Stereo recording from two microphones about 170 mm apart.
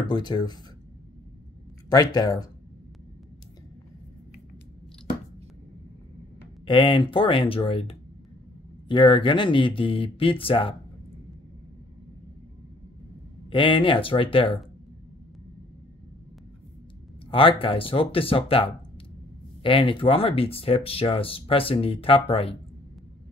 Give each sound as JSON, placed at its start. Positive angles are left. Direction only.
{"t": 0.0, "sound": "speech", "side_deg": 25}
{"t": 1.9, "sound": "speech", "side_deg": 25}
{"t": 6.6, "sound": "speech", "side_deg": 30}
{"t": 13.5, "sound": "speech", "side_deg": 30}
{"t": 17.3, "sound": "speech", "side_deg": 30}